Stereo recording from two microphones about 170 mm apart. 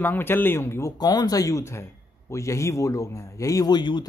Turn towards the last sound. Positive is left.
turn(degrees=25)  # may be behind; listen again after turning